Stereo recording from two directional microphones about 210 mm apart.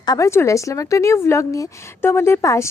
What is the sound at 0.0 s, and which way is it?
Speech, 15° left (ahead or behind).